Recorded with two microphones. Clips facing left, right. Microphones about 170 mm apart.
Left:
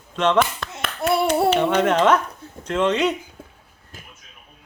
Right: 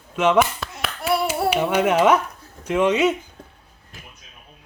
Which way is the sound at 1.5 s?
10° right (ahead or behind).